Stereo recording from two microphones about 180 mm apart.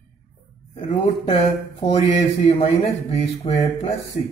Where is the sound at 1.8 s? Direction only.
35° left (ahead or behind).